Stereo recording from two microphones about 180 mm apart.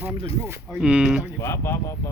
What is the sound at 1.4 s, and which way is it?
Speech, 15° left (ahead or behind).